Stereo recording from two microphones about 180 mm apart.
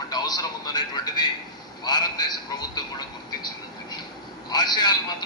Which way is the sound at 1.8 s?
25° left (ahead or behind).